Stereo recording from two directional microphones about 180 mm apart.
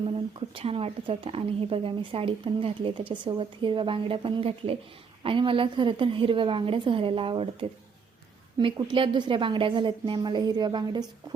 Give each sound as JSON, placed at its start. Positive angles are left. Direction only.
{"t": 0.0, "sound": "speech", "side_deg": -30}